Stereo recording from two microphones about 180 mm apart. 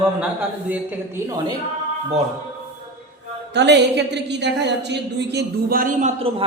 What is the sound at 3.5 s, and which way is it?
A woman's voice, 70° right (ahead or behind).